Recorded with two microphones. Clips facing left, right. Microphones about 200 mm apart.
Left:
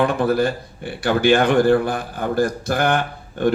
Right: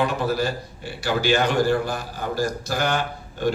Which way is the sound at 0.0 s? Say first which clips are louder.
Left 5 dB; 55° left (ahead or behind).